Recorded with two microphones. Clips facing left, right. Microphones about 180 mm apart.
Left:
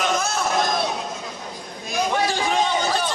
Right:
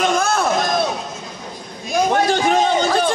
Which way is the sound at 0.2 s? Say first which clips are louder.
Right 6 dB; 55° right (ahead or behind).